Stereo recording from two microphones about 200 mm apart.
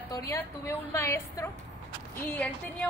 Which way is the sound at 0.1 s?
15° left (ahead or behind).